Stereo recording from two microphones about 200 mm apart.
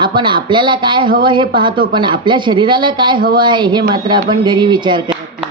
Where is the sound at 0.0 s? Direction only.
25° right (ahead or behind).